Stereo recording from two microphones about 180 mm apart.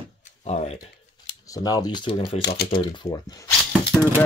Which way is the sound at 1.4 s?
20° left (ahead or behind).